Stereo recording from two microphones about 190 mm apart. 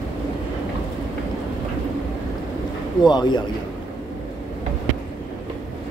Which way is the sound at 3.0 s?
20° left (ahead or behind).